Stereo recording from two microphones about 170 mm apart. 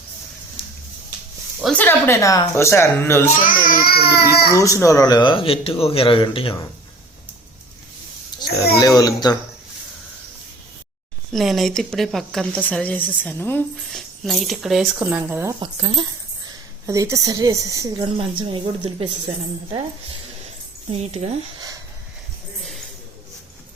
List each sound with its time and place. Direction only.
1.6 s speech: 10° left (ahead or behind)
3.4 s a child's voice: 55° left (ahead or behind)
4.5 s speech: 20° left (ahead or behind)
8.4 s a sound: 25° left (ahead or behind)
8.8 s speech: 20° left (ahead or behind)
11.3 s a woman's voice: centre (ahead or behind)
13.9 s speech: centre (ahead or behind)
14.9 s a woman's voice: 10° right (ahead or behind)
15.6 s a woman's voice: 25° right (ahead or behind)
20.9 s speech: 40° right (ahead or behind)